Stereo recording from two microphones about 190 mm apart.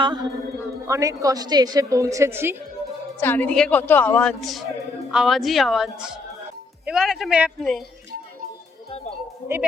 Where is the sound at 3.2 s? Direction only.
10° left (ahead or behind).